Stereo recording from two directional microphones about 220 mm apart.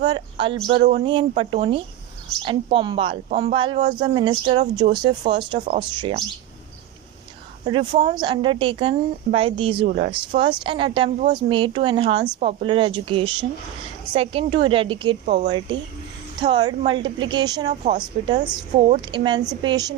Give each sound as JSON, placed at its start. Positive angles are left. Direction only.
{"t": 0.0, "sound": "a woman's voice", "side_deg": -20}
{"t": 0.8, "sound": "a man's voice", "side_deg": -35}
{"t": 1.0, "sound": "a woman's voice", "side_deg": -25}
{"t": 7.6, "sound": "a woman's voice", "side_deg": -20}